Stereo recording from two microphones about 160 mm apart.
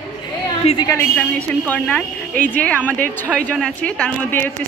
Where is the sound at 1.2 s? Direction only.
10° left (ahead or behind).